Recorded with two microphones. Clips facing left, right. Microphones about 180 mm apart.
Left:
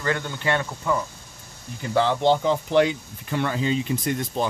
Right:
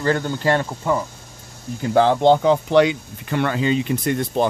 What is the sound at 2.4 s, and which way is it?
Speech, 65° right (ahead or behind).